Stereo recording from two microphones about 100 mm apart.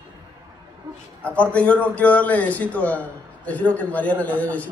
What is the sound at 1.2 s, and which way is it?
A man's voice, 15° left (ahead or behind).